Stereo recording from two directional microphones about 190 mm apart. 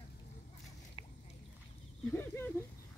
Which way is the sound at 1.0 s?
30° left (ahead or behind).